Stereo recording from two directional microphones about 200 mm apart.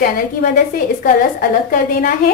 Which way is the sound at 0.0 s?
45° left (ahead or behind).